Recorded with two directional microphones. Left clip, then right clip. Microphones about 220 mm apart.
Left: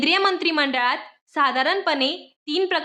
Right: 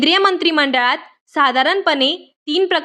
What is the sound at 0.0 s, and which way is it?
A woman's voice, 30° right (ahead or behind).